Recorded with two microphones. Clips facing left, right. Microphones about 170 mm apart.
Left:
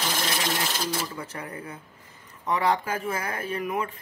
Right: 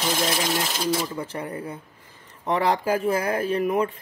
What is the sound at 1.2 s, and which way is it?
Speech, 30° right (ahead or behind).